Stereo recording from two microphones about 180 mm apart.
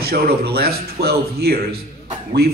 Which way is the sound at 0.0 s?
60° right (ahead or behind).